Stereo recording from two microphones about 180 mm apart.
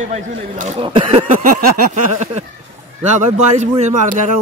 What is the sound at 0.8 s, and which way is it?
Speech, 30° right (ahead or behind).